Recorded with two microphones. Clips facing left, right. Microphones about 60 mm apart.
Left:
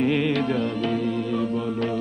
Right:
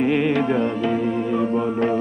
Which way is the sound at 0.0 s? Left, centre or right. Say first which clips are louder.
Right 3 dB; centre.